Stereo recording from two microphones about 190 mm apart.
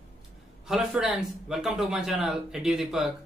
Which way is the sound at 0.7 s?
Centre (ahead or behind).